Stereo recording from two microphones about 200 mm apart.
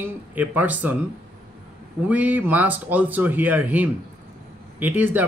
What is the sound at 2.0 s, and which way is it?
Speech, 5° right (ahead or behind).